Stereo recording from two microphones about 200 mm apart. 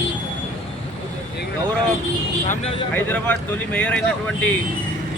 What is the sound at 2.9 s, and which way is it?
Speech, 10° left (ahead or behind).